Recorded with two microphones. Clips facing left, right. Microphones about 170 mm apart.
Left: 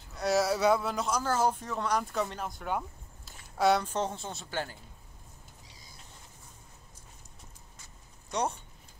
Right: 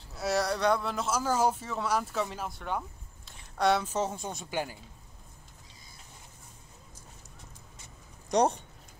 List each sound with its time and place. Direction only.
0.1 s speech: centre (ahead or behind)
8.3 s speech: 40° right (ahead or behind)